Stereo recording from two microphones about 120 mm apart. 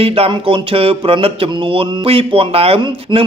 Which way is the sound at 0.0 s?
55° right (ahead or behind).